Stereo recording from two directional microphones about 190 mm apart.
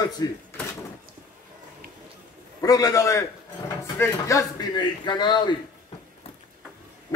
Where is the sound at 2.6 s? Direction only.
20° left (ahead or behind).